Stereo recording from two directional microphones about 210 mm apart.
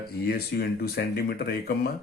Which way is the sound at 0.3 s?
50° left (ahead or behind).